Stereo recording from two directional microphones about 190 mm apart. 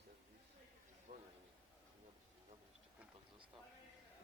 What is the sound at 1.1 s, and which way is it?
Speech, 45° right (ahead or behind).